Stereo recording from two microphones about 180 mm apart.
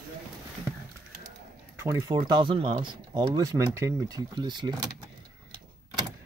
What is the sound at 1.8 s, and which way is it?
Speech, 15° right (ahead or behind).